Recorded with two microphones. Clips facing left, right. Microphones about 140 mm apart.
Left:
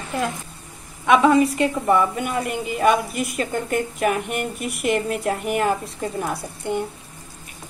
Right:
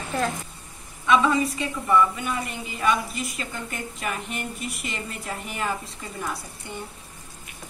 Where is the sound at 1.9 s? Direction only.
55° left (ahead or behind).